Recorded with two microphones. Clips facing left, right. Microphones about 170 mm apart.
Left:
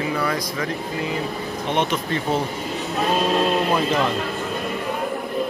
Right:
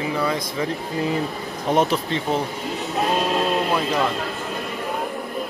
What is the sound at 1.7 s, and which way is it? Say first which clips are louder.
Speech: right 4 dB; 40° right (ahead or behind).